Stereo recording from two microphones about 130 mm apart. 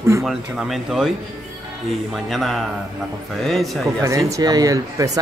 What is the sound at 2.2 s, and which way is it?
Speech, centre (ahead or behind).